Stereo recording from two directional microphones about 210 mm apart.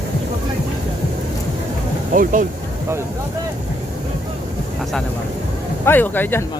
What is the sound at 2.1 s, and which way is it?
Speech, 40° right (ahead or behind).